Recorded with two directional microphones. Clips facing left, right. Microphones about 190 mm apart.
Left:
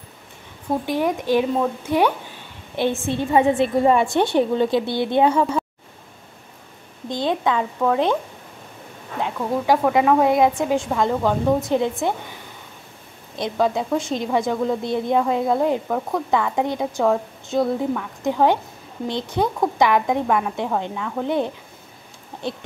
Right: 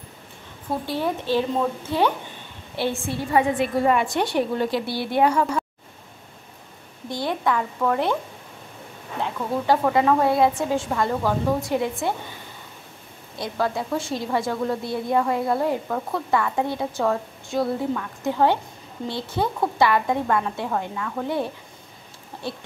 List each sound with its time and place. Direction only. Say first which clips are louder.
0.8 s a woman's voice: left 3 dB; 15° left (ahead or behind)
7.1 s a woman's voice: left 3 dB; 20° left (ahead or behind)
9.2 s a woman's voice: left 3 dB; 15° left (ahead or behind)
13.4 s a woman's voice: left 4 dB; 20° left (ahead or behind)
22.3 s a sound: left 4 dB; 15° left (ahead or behind)